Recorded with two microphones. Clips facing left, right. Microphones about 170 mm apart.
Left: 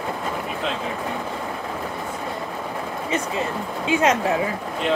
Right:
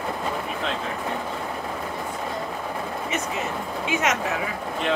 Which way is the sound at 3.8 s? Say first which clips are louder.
Left 6 dB; 30° left (ahead or behind).